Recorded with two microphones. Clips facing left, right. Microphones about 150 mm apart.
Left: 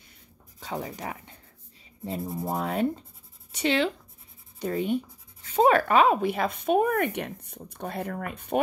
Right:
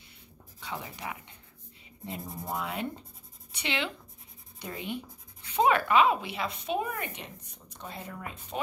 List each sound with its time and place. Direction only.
0.6 s speech: 40° left (ahead or behind)
2.5 s speech: 40° left (ahead or behind); by 8.5 s 60° left (ahead or behind)